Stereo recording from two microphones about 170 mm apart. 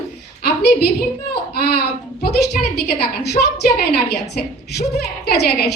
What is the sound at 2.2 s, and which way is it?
Speech, 70° left (ahead or behind).